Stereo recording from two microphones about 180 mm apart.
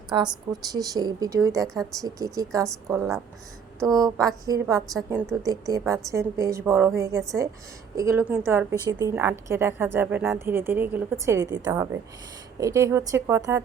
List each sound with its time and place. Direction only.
0.7 s speech: 20° right (ahead or behind)
1.6 s a woman's voice: centre (ahead or behind)
2.0 s a woman's voice: 20° right (ahead or behind)
4.9 s a woman's voice: centre (ahead or behind)
5.3 s a woman's voice: 20° right (ahead or behind)